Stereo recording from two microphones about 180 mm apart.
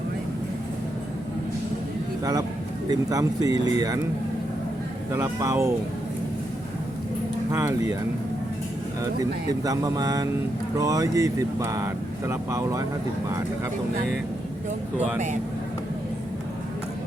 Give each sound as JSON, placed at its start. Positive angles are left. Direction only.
{"t": 2.9, "sound": "speech", "side_deg": -20}
{"t": 5.1, "sound": "speech", "side_deg": -15}
{"t": 7.5, "sound": "speech", "side_deg": -15}
{"t": 9.5, "sound": "speech", "side_deg": -20}